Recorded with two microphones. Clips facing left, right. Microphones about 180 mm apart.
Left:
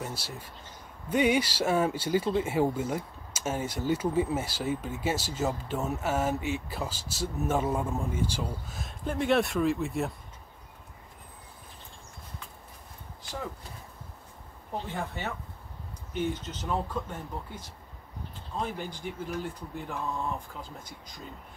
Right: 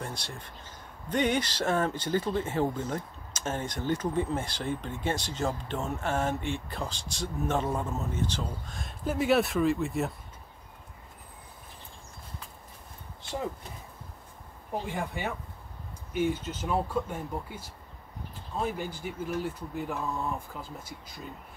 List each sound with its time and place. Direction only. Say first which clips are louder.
0.0 s speech: left 1 dB; 5° left (ahead or behind)
13.2 s a sound: right 4 dB; 25° right (ahead or behind)
14.7 s speech: right 2 dB; 10° right (ahead or behind)